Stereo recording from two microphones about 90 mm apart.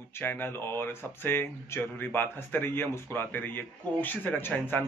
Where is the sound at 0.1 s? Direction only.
25° left (ahead or behind).